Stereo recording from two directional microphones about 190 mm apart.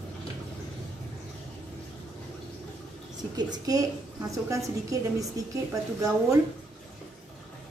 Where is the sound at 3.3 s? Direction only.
20° right (ahead or behind).